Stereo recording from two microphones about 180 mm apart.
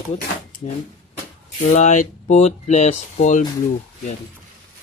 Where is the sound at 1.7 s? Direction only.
40° left (ahead or behind).